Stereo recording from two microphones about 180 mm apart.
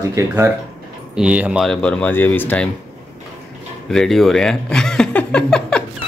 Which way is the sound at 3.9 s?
Centre (ahead or behind).